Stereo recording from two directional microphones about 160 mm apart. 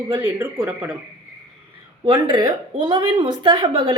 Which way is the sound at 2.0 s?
25° right (ahead or behind).